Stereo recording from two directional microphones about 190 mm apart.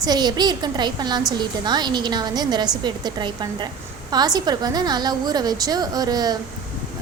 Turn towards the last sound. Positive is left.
turn(degrees=-20)  # may be behind; listen again after turning